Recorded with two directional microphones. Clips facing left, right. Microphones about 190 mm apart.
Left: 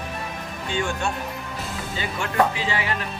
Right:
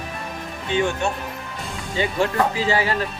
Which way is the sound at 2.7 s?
35° right (ahead or behind).